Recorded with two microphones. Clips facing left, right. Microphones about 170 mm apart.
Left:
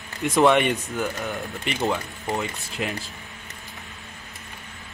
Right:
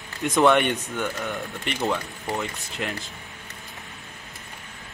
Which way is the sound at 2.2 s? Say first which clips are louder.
Left 1 dB; 15° left (ahead or behind).